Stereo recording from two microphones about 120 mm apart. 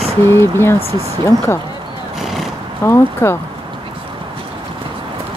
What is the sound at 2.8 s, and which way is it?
Speech, 20° left (ahead or behind).